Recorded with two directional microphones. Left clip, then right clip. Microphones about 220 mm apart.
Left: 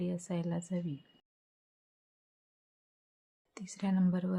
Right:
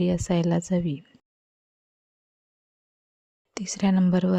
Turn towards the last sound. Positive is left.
turn(degrees=-40)  # may be behind; listen again after turning